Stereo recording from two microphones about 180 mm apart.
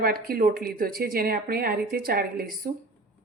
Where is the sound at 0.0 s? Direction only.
55° right (ahead or behind).